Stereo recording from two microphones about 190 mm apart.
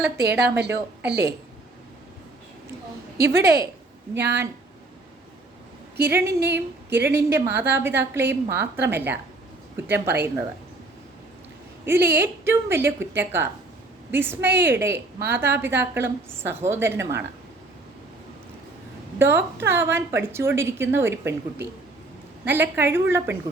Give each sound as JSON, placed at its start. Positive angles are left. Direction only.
{"t": 0.2, "sound": "a woman's voice", "side_deg": -15}
{"t": 0.6, "sound": "a woman's voice", "side_deg": -65}
{"t": 3.2, "sound": "a woman's voice", "side_deg": -15}
{"t": 6.0, "sound": "a woman's voice", "side_deg": -10}
{"t": 11.9, "sound": "a woman's voice", "side_deg": -10}
{"t": 19.2, "sound": "a woman's voice", "side_deg": -10}
{"t": 22.4, "sound": "a woman's voice", "side_deg": -10}